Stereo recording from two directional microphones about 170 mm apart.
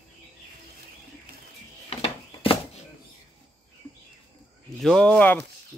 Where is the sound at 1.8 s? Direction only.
35° left (ahead or behind).